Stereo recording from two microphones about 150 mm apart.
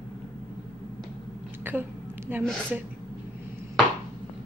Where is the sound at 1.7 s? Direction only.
15° right (ahead or behind).